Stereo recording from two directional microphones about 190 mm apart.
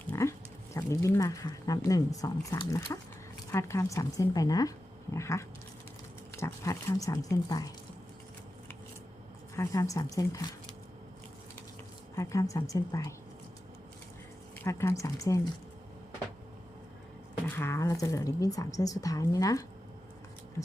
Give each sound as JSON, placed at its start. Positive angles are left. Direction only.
{"t": 0.1, "sound": "a woman's voice", "side_deg": 15}
{"t": 9.6, "sound": "speech", "side_deg": 15}
{"t": 12.1, "sound": "a woman's voice", "side_deg": 15}
{"t": 14.6, "sound": "a woman's voice", "side_deg": 15}
{"t": 17.5, "sound": "a woman's voice", "side_deg": 15}